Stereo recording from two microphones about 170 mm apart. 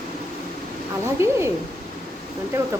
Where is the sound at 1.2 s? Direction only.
15° right (ahead or behind).